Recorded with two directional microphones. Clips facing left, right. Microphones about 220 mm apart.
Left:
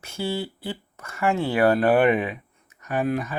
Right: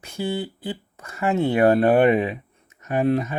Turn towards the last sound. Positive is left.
turn(degrees=-25)  # may be behind; listen again after turning